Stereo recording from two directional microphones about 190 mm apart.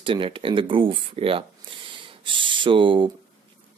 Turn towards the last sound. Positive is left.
turn(degrees=-25)  # may be behind; listen again after turning